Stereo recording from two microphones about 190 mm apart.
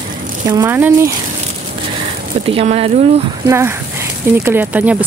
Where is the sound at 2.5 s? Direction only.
30° right (ahead or behind).